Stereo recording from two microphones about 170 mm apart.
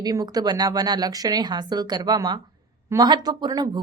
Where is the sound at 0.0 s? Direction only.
20° right (ahead or behind).